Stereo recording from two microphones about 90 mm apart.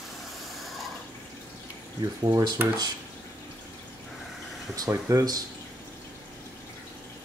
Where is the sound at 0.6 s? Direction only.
Centre (ahead or behind).